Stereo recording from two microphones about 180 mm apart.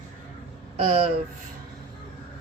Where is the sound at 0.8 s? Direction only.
35° right (ahead or behind).